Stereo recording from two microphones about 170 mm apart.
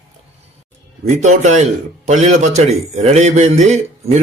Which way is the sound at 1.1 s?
45° right (ahead or behind).